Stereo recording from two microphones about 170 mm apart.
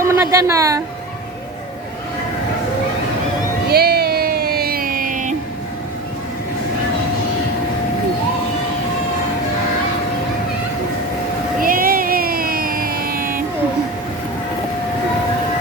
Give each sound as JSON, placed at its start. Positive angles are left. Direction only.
{"t": 0.0, "sound": "speech", "side_deg": -15}
{"t": 3.7, "sound": "music", "side_deg": -65}
{"t": 11.6, "sound": "a sound", "side_deg": -55}